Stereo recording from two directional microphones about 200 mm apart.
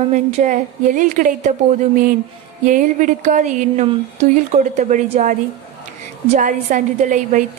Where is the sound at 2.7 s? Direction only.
40° right (ahead or behind).